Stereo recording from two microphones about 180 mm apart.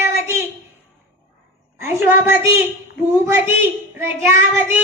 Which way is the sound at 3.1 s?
15° right (ahead or behind).